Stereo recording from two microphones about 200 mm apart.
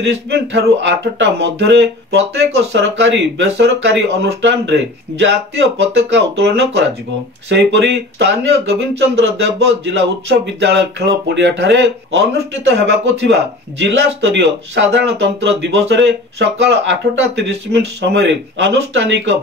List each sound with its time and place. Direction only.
0.0 s speech: 60° right (ahead or behind)